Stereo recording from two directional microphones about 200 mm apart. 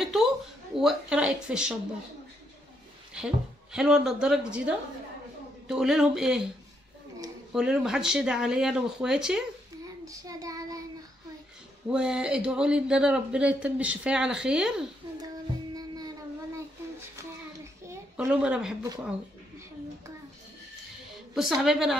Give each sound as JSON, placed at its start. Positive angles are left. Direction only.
{"t": 0.0, "sound": "a sound", "side_deg": 0}
{"t": 0.7, "sound": "a man's voice", "side_deg": -5}
{"t": 3.2, "sound": "a man's voice", "side_deg": -5}
{"t": 7.5, "sound": "a man's voice", "side_deg": -5}
{"t": 10.0, "sound": "child singing", "side_deg": -15}
{"t": 11.9, "sound": "a man's voice", "side_deg": -5}
{"t": 15.7, "sound": "a sound", "side_deg": -20}
{"t": 17.8, "sound": "a woman's voice", "side_deg": -10}
{"t": 21.1, "sound": "a woman's voice", "side_deg": 0}